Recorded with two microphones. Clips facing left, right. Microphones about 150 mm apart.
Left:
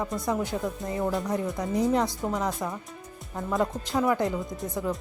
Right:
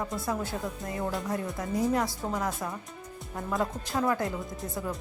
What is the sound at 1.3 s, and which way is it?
Speech, 20° left (ahead or behind).